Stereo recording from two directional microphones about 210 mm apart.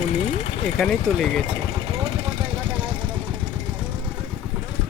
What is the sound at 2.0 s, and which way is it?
Vehicle, 25° right (ahead or behind).